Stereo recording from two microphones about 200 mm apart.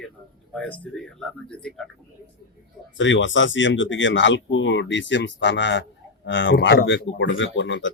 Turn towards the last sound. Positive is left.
turn(degrees=70)  # may be behind; listen again after turning